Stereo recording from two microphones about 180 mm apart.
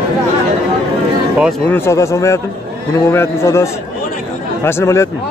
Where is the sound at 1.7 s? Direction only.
15° left (ahead or behind).